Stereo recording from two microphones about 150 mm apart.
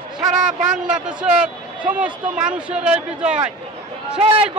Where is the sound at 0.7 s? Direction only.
5° right (ahead or behind).